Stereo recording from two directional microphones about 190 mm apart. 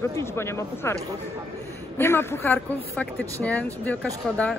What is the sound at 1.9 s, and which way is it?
Speech, 10° left (ahead or behind).